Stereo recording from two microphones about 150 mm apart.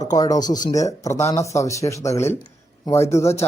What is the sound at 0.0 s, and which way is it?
Speech, 25° left (ahead or behind).